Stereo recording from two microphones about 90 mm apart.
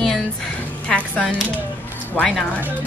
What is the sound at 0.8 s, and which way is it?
Speech, 15° left (ahead or behind).